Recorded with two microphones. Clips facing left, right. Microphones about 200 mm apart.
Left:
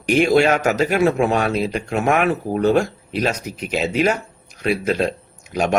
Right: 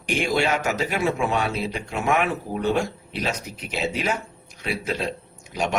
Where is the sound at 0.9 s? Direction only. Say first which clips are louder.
Left 7 dB; 70° left (ahead or behind).